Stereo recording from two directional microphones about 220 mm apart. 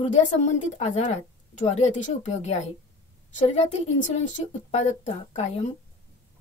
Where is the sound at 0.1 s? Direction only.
30° left (ahead or behind).